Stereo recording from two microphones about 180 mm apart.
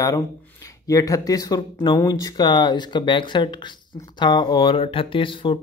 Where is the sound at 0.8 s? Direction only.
20° left (ahead or behind).